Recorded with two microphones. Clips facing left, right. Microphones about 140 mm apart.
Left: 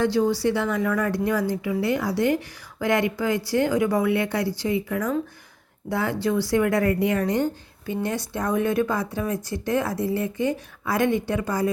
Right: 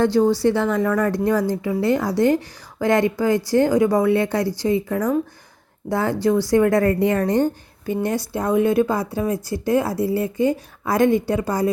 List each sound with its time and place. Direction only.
0.0 s a woman's voice: 50° right (ahead or behind)
8.3 s speech: 30° right (ahead or behind)